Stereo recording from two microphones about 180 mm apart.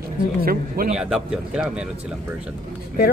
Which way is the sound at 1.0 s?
5° right (ahead or behind).